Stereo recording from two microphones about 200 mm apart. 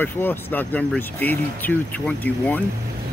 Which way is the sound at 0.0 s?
10° left (ahead or behind).